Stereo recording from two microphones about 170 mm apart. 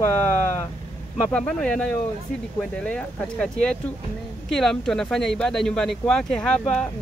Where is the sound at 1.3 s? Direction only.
5° left (ahead or behind).